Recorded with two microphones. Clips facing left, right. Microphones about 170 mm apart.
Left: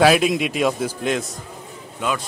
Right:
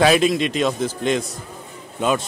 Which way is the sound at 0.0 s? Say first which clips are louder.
Even; 5° left (ahead or behind).